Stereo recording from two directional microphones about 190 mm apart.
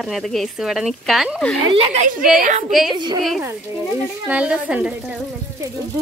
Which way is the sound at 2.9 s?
25° right (ahead or behind).